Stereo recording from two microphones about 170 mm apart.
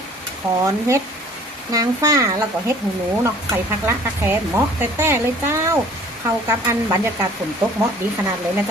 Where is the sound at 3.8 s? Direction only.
15° right (ahead or behind).